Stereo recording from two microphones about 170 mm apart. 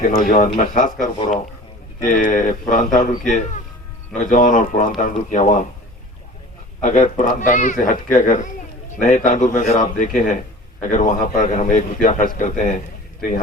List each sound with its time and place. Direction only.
0.0 s a man's voice: 50° left (ahead or behind)
6.8 s a man's voice: 45° left (ahead or behind)